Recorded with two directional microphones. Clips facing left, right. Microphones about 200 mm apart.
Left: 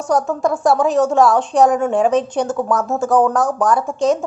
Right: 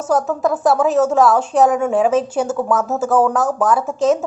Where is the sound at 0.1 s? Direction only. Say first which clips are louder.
Even; 5° right (ahead or behind).